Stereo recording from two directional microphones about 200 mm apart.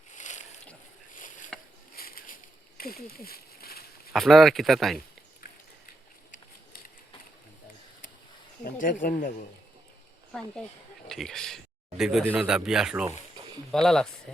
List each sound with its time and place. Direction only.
0.1 s boat: 35° left (ahead or behind)
1.1 s a sound: 40° left (ahead or behind)
4.1 s speech: centre (ahead or behind)
8.6 s speech: 40° left (ahead or behind)
11.1 s speech: centre (ahead or behind)